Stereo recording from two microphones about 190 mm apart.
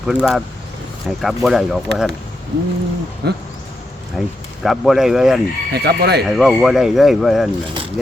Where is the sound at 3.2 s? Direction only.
60° right (ahead or behind).